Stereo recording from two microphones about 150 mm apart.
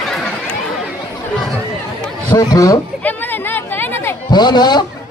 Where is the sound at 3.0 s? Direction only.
15° left (ahead or behind).